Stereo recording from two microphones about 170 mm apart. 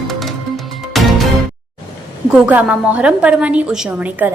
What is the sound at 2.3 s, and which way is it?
A woman's voice, 10° right (ahead or behind).